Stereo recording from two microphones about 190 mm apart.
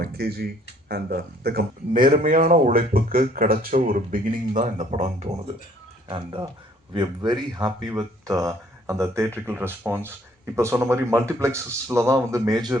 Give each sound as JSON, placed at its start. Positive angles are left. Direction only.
{"t": 0.0, "sound": "speech", "side_deg": -55}